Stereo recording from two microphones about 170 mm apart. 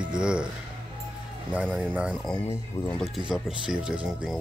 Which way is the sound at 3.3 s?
5° right (ahead or behind).